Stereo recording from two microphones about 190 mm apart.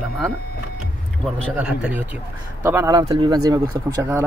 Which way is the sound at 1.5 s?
5° right (ahead or behind).